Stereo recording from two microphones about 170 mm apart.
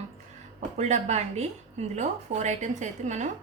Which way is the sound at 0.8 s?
40° right (ahead or behind).